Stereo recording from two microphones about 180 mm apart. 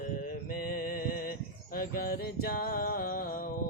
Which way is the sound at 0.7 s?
55° left (ahead or behind).